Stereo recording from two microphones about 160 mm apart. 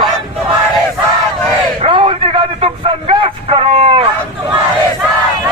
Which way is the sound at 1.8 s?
30° right (ahead or behind).